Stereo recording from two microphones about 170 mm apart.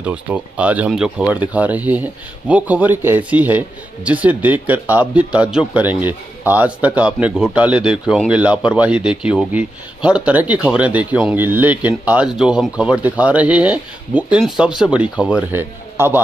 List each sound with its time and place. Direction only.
0.0 s a man's voice: 10° right (ahead or behind)